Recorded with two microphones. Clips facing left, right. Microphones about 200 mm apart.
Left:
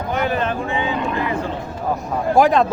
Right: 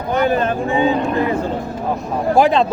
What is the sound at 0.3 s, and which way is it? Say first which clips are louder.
Speech: right 4 dB; 45° right (ahead or behind).